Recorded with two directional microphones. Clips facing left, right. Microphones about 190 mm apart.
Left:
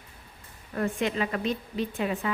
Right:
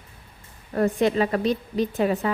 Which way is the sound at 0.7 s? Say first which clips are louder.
Right 7 dB; 40° right (ahead or behind).